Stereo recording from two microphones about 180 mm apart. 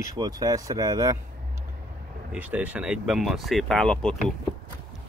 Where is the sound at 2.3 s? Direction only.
10° right (ahead or behind).